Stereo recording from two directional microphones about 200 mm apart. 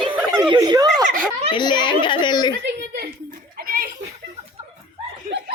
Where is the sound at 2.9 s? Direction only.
50° right (ahead or behind).